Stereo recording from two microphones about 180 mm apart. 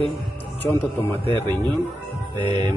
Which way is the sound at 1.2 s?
30° right (ahead or behind).